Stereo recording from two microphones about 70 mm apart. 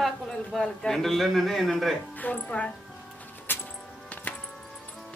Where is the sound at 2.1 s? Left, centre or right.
Left.